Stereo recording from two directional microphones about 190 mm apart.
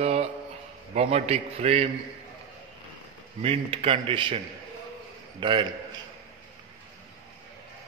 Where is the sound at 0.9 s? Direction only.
35° right (ahead or behind).